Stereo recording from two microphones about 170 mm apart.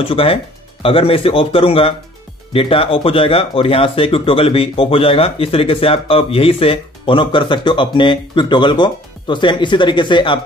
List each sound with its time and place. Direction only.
0.0 s speech: 35° left (ahead or behind)